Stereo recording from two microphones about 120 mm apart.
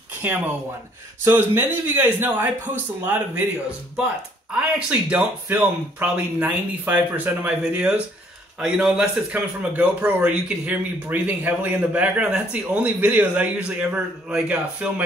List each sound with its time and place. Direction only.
0.2 s a man's voice: 15° right (ahead or behind)
4.7 s a man's voice: 10° right (ahead or behind)